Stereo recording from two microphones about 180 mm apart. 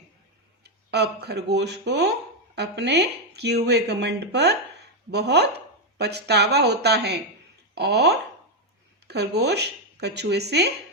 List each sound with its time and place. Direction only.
0.6 s speech: 65° right (ahead or behind)